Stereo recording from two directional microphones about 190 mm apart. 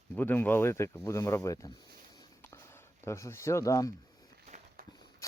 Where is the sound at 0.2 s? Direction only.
10° left (ahead or behind).